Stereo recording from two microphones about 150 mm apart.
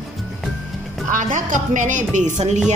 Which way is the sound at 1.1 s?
60° right (ahead or behind).